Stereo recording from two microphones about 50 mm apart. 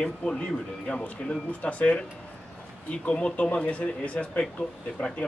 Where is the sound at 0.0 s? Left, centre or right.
Centre.